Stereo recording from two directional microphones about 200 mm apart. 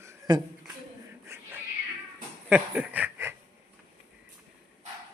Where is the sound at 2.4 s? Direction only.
5° right (ahead or behind).